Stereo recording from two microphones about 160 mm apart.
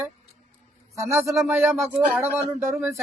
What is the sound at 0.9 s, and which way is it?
Speech, 20° right (ahead or behind).